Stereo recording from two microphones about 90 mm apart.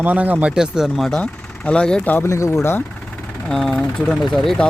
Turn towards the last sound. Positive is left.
turn(degrees=5)  # may be behind; listen again after turning